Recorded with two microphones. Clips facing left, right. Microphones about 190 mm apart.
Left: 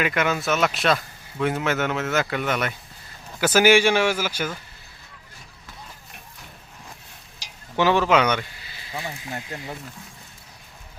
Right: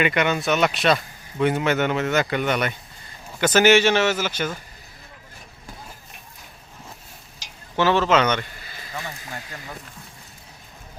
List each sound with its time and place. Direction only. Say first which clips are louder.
0.0 s a man's voice: right 2 dB; centre (ahead or behind)
7.8 s a man's voice: even; 15° left (ahead or behind)
8.5 s a sound: right 4 dB; 45° right (ahead or behind)